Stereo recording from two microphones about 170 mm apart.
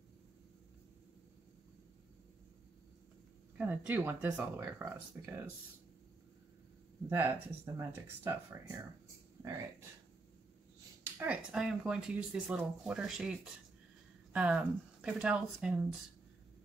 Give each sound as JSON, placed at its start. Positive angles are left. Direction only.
{"t": 3.5, "sound": "speech", "side_deg": -10}
{"t": 7.1, "sound": "speech", "side_deg": -15}
{"t": 11.1, "sound": "speech", "side_deg": -5}